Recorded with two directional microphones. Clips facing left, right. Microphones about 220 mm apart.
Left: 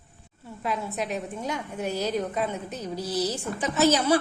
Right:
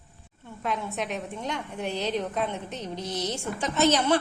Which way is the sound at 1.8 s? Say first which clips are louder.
Left 2 dB; 40° left (ahead or behind).